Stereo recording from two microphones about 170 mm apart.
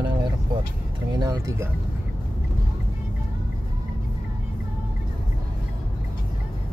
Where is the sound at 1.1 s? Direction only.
20° right (ahead or behind).